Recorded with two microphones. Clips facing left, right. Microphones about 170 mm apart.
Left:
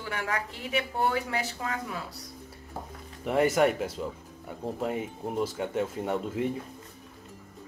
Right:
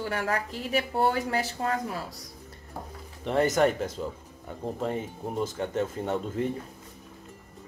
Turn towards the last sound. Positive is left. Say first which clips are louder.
# even
turn(degrees=5)  # may be behind; listen again after turning